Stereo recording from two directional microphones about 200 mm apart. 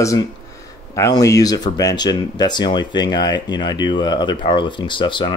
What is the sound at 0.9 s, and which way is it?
Speech, 15° left (ahead or behind).